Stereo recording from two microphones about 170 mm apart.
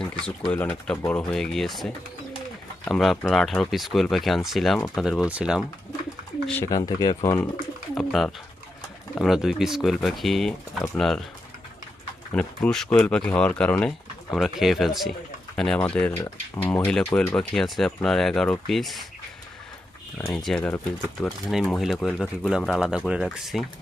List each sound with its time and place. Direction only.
0.5 s speech: 10° left (ahead or behind)
6.7 s speech: 25° left (ahead or behind)
7.9 s speech: centre (ahead or behind)
12.3 s speech: 5° left (ahead or behind)
20.1 s speech: 5° left (ahead or behind)